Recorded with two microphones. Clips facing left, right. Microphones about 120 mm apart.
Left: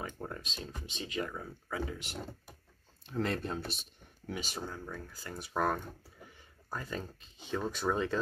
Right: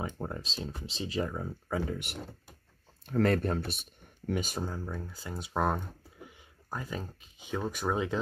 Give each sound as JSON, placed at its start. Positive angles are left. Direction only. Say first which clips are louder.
{"t": 0.2, "sound": "speech", "louder": "right 4 dB", "side_deg": -30}
{"t": 3.1, "sound": "speech", "louder": "right 7 dB", "side_deg": -55}
{"t": 4.6, "sound": "speech", "louder": "right 4 dB", "side_deg": -30}
{"t": 4.9, "sound": "speech", "louder": "right 4 dB", "side_deg": -20}